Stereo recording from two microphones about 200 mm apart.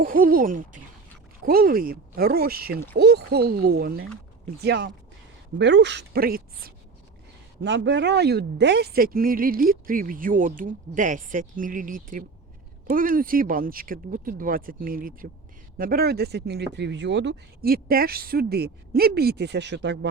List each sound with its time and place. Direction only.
0.0 s speech: 45° right (ahead or behind)
7.6 s speech: 60° right (ahead or behind)